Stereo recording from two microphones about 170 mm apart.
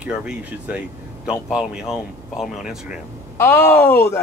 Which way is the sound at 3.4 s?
15° left (ahead or behind).